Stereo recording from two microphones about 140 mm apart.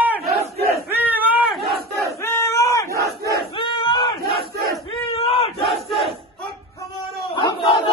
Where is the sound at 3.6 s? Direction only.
35° left (ahead or behind).